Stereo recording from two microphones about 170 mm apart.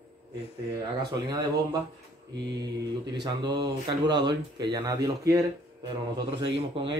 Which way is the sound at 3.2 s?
25° right (ahead or behind).